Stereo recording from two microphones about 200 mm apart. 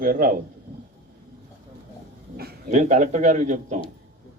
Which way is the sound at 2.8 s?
35° right (ahead or behind).